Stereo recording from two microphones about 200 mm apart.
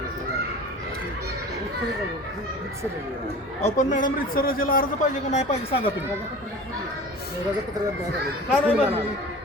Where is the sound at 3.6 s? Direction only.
35° left (ahead or behind).